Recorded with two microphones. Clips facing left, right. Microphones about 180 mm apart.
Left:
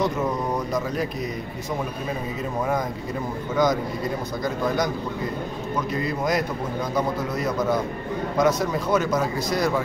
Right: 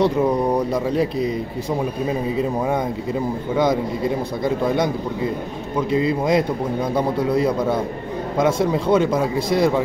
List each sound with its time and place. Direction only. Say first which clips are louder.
0.0 s speech: right 6 dB; 30° right (ahead or behind)
3.5 s a man's voice: right 2 dB; 30° right (ahead or behind)
5.8 s a man's voice: right 8 dB; 25° right (ahead or behind)